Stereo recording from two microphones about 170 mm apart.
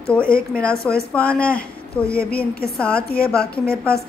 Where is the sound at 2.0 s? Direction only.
65° left (ahead or behind).